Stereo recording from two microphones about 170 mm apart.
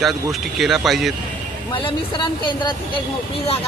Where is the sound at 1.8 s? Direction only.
30° left (ahead or behind).